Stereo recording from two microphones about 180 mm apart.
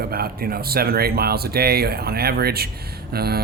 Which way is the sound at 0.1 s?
55° right (ahead or behind).